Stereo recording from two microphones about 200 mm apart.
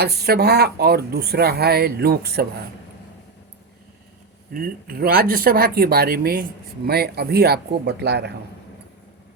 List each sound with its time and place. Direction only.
0.0 s speech: 50° right (ahead or behind)
4.5 s speech: 45° right (ahead or behind)